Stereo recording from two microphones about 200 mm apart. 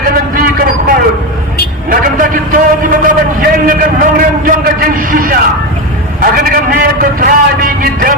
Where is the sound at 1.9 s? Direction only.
45° right (ahead or behind).